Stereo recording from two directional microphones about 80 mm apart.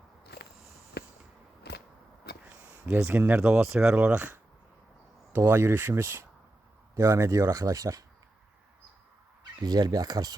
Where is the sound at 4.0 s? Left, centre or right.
Right.